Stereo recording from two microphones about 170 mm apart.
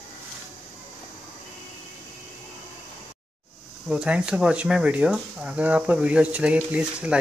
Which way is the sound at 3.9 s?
5° right (ahead or behind).